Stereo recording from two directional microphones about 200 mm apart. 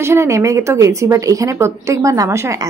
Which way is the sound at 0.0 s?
15° right (ahead or behind).